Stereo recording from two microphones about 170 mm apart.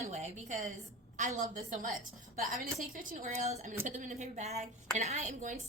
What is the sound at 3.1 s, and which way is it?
A woman's voice, 45° right (ahead or behind).